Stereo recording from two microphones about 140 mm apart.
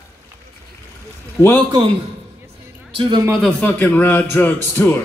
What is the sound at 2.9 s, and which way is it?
Speech, 35° right (ahead or behind).